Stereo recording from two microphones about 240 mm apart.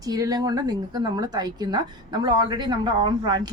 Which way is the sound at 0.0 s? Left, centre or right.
Centre.